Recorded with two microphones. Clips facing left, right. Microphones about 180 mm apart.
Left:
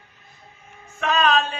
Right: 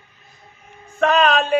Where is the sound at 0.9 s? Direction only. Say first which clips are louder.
Right 5 dB; 60° right (ahead or behind).